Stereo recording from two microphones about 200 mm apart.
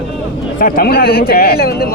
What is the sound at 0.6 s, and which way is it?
A man's voice, 50° left (ahead or behind).